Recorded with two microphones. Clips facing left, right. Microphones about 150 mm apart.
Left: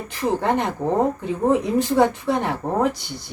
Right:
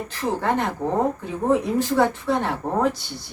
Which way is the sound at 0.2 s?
20° left (ahead or behind).